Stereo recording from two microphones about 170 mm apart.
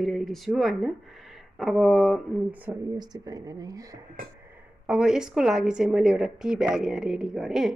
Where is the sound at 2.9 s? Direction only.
25° right (ahead or behind).